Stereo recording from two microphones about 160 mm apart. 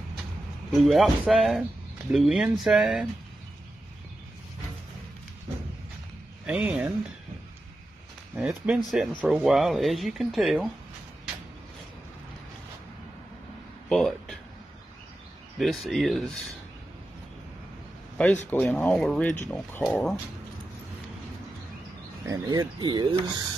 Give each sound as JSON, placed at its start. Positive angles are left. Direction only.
{"t": 0.7, "sound": "speech", "side_deg": 0}
{"t": 6.4, "sound": "speech", "side_deg": -5}
{"t": 8.4, "sound": "speech", "side_deg": -5}
{"t": 13.8, "sound": "a sound", "side_deg": 5}
{"t": 15.6, "sound": "speech", "side_deg": 0}
{"t": 18.1, "sound": "a sound", "side_deg": 5}
{"t": 18.5, "sound": "speech", "side_deg": 10}
{"t": 22.2, "sound": "speech", "side_deg": -20}